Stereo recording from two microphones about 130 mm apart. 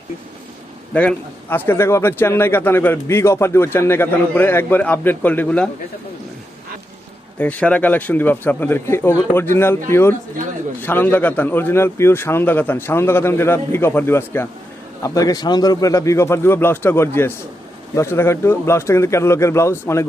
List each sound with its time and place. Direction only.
0.9 s a man's voice: 10° left (ahead or behind)
7.3 s a man's voice: 10° left (ahead or behind)